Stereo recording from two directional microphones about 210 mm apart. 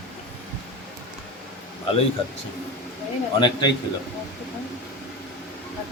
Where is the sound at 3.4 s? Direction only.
20° left (ahead or behind).